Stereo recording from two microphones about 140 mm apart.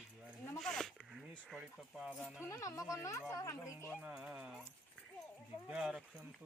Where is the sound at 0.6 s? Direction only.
5° left (ahead or behind).